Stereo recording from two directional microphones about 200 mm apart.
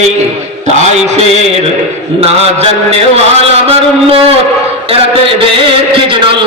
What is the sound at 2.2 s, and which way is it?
Mantra, 30° right (ahead or behind).